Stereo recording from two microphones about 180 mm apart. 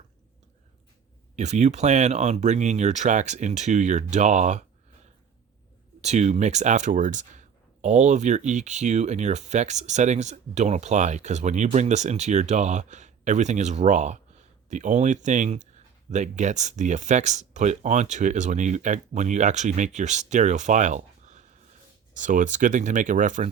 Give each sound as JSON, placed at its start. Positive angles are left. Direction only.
{"t": 1.4, "sound": "speech", "side_deg": -40}
{"t": 6.0, "sound": "speech", "side_deg": -40}